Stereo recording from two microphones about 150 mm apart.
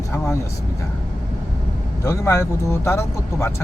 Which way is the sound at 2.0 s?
20° left (ahead or behind).